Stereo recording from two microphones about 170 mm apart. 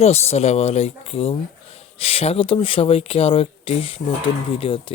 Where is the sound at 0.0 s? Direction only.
40° left (ahead or behind).